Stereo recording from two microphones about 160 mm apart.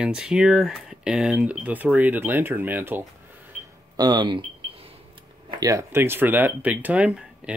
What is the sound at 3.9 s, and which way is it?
Speech, 25° right (ahead or behind).